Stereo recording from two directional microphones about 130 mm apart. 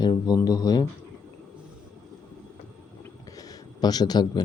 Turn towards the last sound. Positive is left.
turn(degrees=30)  # may be behind; listen again after turning